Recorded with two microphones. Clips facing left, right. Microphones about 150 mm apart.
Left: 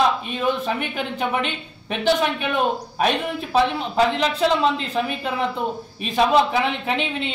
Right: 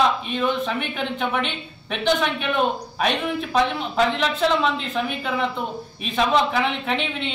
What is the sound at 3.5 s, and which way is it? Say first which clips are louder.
Speech: left 3 dB; 35° left (ahead or behind).